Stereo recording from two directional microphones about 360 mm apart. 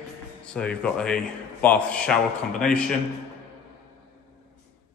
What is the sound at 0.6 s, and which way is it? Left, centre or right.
A man's voice, centre.